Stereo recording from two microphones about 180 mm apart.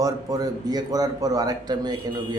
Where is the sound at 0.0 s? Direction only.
20° right (ahead or behind).